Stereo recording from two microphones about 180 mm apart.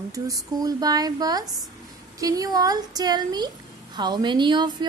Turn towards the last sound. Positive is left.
turn(degrees=-25)  # may be behind; listen again after turning